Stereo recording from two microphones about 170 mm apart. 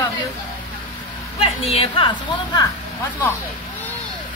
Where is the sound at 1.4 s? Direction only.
35° left (ahead or behind).